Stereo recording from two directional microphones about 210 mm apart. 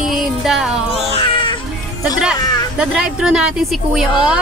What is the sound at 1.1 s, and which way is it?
Cat, 25° left (ahead or behind).